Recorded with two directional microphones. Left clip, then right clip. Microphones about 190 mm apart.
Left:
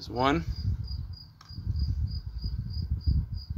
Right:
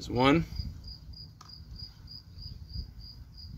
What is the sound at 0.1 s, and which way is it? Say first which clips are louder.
Cricket: right 1 dB; 25° right (ahead or behind).